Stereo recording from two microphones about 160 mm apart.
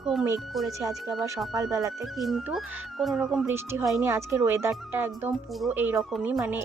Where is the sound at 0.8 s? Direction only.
20° right (ahead or behind).